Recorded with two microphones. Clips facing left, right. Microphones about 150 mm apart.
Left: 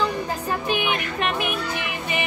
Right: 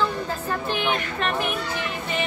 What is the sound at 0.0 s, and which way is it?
Speech, 15° left (ahead or behind).